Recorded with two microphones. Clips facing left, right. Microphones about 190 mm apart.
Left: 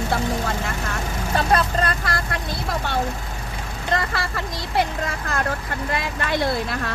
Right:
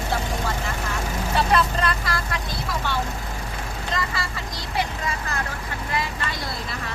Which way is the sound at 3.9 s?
60° left (ahead or behind).